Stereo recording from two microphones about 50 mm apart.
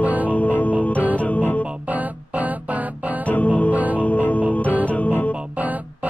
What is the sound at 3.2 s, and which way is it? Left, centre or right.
Music, left.